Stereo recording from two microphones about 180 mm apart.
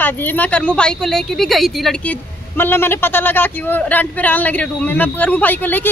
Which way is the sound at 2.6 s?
10° left (ahead or behind).